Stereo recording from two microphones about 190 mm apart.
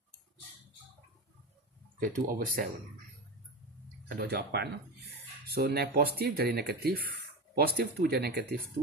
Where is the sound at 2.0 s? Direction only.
45° right (ahead or behind).